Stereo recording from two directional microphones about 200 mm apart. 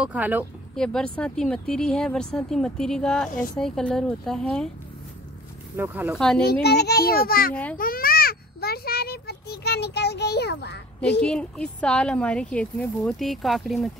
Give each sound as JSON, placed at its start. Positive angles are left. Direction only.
{"t": 0.0, "sound": "speech", "side_deg": -5}
{"t": 0.7, "sound": "speech", "side_deg": 5}
{"t": 5.8, "sound": "speech", "side_deg": -10}
{"t": 6.1, "sound": "speech", "side_deg": 5}
{"t": 6.6, "sound": "a child's voice", "side_deg": 55}
{"t": 7.7, "sound": "baby cry", "side_deg": 45}
{"t": 11.0, "sound": "speech", "side_deg": 5}